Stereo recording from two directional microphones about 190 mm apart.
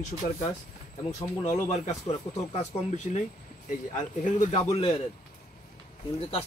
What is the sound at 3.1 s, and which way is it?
Speech, 40° left (ahead or behind).